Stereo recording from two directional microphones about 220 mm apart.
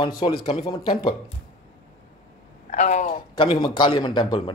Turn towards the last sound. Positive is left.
turn(degrees=20)  # may be behind; listen again after turning